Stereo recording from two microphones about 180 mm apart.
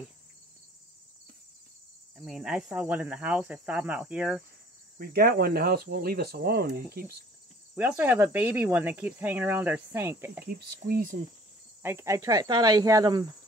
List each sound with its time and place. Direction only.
2.1 s speech: centre (ahead or behind)
4.9 s speech: 60° right (ahead or behind)
8.0 s speech: 10° right (ahead or behind)
10.4 s speech: 55° right (ahead or behind)
11.8 s speech: 15° right (ahead or behind)